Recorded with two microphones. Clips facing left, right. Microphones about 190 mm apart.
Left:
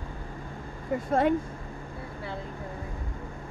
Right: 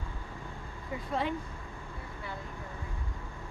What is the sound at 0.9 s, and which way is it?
Speech, 50° left (ahead or behind).